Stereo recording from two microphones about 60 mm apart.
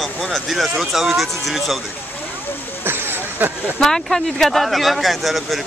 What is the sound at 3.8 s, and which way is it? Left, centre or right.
Speech, centre.